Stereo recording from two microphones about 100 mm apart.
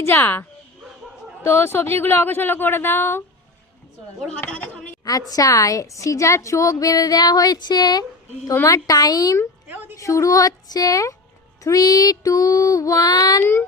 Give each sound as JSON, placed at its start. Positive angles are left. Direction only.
{"t": 0.0, "sound": "speech", "side_deg": 20}
{"t": 1.5, "sound": "speech", "side_deg": 25}
{"t": 4.4, "sound": "speech", "side_deg": 15}
{"t": 5.3, "sound": "a woman's voice", "side_deg": 35}
{"t": 9.6, "sound": "a sound", "side_deg": -20}
{"t": 9.9, "sound": "a woman's voice", "side_deg": 30}
{"t": 13.4, "sound": "speech", "side_deg": 20}